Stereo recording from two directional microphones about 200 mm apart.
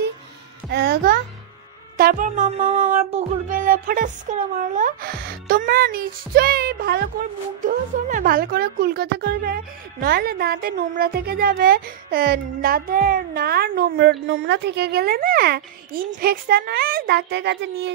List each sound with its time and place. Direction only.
0.7 s a child's voice: 55° right (ahead or behind)
2.0 s music: 45° right (ahead or behind)